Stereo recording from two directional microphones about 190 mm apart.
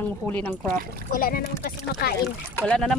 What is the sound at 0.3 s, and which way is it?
Speech, 10° left (ahead or behind).